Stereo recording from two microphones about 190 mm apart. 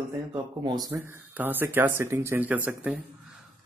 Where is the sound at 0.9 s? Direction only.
10° right (ahead or behind).